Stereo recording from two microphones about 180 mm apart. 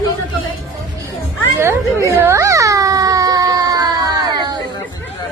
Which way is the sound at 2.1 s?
15° right (ahead or behind).